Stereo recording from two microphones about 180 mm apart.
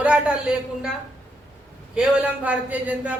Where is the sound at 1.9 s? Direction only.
5° right (ahead or behind).